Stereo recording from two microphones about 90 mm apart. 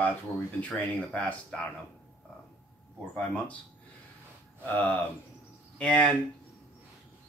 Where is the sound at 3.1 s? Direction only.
15° left (ahead or behind).